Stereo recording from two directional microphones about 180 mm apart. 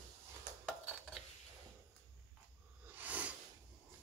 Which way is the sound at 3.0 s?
10° right (ahead or behind).